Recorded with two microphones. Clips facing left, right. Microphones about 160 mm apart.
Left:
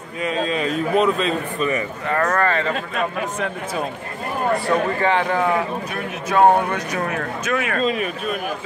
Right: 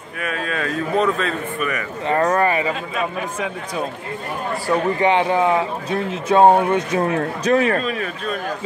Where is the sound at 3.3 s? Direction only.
Centre (ahead or behind).